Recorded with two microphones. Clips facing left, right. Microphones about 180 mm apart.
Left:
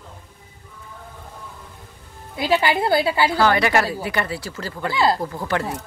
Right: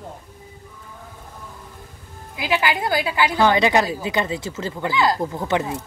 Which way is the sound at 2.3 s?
35° left (ahead or behind).